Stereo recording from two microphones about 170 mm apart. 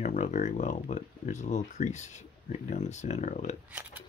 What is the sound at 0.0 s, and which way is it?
Speech, 45° left (ahead or behind).